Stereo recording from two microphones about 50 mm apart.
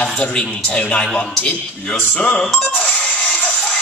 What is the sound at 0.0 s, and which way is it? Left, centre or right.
A man's voice, left.